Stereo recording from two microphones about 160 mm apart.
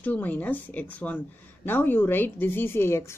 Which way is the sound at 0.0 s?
10° left (ahead or behind).